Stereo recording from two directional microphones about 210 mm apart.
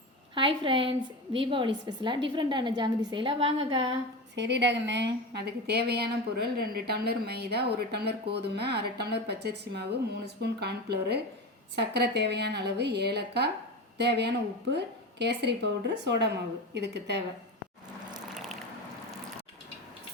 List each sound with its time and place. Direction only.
0.3 s a woman's voice: 25° right (ahead or behind)
4.4 s a woman's voice: 55° right (ahead or behind)
14.7 s a woman's voice: 55° right (ahead or behind)